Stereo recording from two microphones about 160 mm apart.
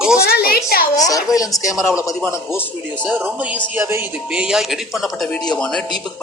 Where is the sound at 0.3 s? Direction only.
70° left (ahead or behind).